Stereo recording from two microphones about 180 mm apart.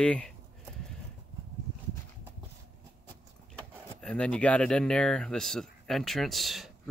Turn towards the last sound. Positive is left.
turn(degrees=0)  # may be behind; listen again after turning